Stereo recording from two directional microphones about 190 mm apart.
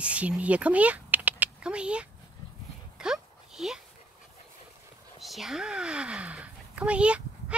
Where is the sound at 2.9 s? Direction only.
5° right (ahead or behind).